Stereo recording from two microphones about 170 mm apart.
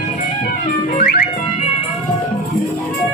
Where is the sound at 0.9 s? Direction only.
60° left (ahead or behind).